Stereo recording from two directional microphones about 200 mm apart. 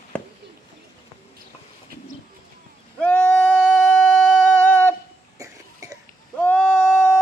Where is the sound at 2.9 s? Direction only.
5° left (ahead or behind).